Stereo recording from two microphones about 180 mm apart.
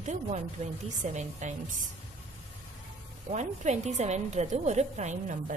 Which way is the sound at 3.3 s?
40° right (ahead or behind).